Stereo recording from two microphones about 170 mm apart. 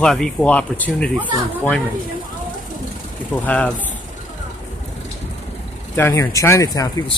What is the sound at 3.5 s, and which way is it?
Speech, 5° left (ahead or behind).